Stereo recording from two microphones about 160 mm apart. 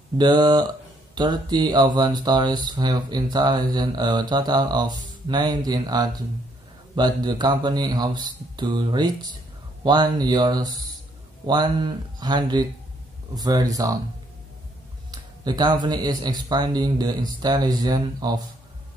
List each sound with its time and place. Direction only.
0.2 s speech: 25° right (ahead or behind)
15.0 s speech: 25° right (ahead or behind)